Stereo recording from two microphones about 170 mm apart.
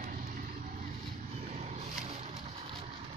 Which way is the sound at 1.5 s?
45° right (ahead or behind).